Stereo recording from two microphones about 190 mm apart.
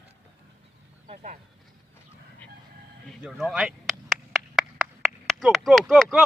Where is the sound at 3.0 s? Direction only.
Centre (ahead or behind).